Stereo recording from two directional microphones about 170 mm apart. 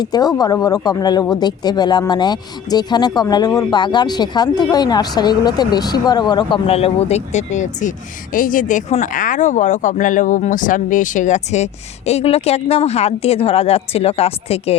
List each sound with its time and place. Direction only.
0.0 s speech: 20° left (ahead or behind)